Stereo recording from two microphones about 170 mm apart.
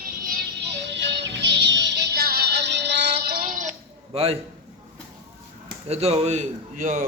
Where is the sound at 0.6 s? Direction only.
90° right; by 3.7 s 50° right (ahead or behind).